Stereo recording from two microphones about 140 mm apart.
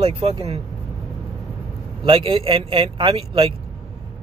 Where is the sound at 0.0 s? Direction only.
45° right (ahead or behind).